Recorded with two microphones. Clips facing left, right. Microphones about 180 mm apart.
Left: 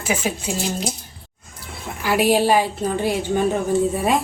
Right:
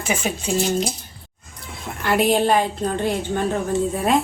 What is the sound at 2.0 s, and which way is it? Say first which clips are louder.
A woman's voice: left 1 dB; 5° left (ahead or behind).